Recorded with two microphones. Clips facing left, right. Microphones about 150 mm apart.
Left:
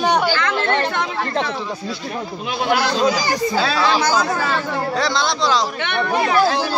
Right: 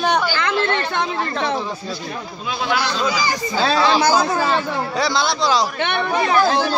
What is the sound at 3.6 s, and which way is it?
Speech, 30° right (ahead or behind).